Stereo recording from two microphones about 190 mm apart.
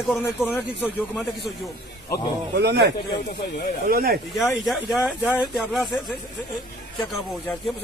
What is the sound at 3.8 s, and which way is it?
Speech, 50° right (ahead or behind).